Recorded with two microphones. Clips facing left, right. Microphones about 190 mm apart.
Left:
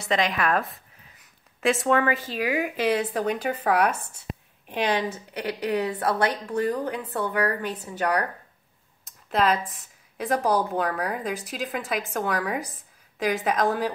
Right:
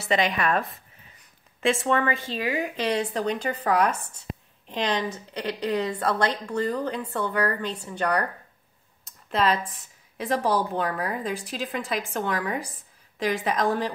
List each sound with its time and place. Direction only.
0.0 s a woman's voice: centre (ahead or behind)
9.0 s a sound: centre (ahead or behind)
10.1 s a woman's voice: centre (ahead or behind)